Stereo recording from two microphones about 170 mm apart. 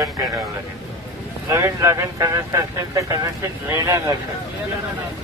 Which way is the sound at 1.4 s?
15° right (ahead or behind).